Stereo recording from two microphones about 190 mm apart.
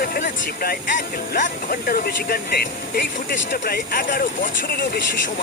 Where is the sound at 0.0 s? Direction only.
50° left (ahead or behind).